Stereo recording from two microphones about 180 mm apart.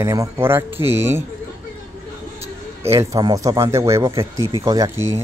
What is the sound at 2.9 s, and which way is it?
Speech, 15° right (ahead or behind).